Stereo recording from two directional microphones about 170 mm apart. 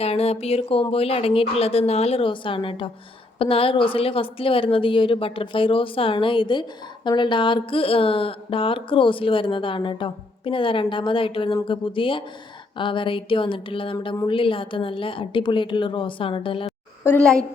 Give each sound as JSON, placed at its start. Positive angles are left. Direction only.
{"t": 0.0, "sound": "a woman's voice", "side_deg": 35}
{"t": 17.0, "sound": "a woman's voice", "side_deg": 10}